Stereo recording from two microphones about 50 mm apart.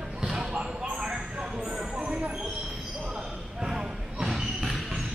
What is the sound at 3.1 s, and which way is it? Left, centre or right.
Basketball bounce, centre.